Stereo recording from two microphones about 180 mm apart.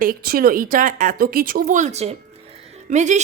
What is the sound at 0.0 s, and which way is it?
Speech, 55° right (ahead or behind).